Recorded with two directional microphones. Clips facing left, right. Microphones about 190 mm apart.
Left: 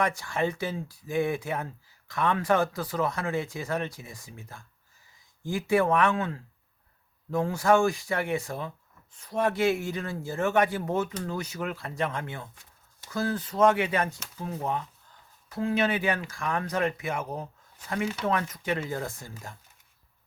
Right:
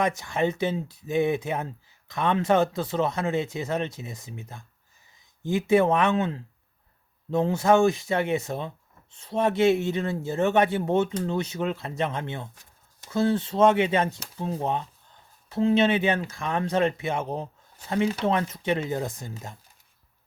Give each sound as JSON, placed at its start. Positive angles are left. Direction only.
{"t": 0.0, "sound": "speech", "side_deg": -20}